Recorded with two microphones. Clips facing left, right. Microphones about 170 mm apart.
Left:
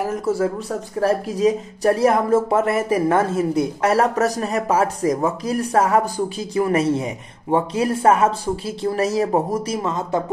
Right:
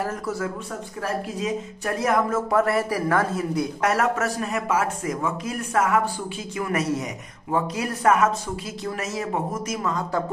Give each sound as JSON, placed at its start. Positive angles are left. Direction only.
{"t": 0.0, "sound": "speech", "side_deg": 15}
{"t": 0.3, "sound": "speech", "side_deg": 35}